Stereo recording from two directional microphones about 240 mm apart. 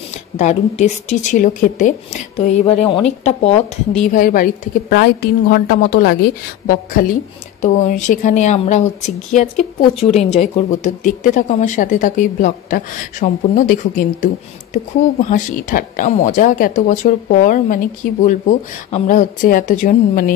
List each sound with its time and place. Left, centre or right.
0.1 s a woman's voice: left
4.1 s speech: left